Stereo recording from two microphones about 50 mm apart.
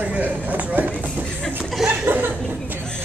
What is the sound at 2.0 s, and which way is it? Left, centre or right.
Speech, right.